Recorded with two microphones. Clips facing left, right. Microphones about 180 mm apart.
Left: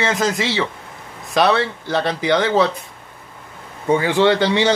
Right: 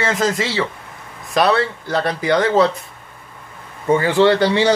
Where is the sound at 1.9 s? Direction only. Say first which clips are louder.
Right 1 dB; centre (ahead or behind).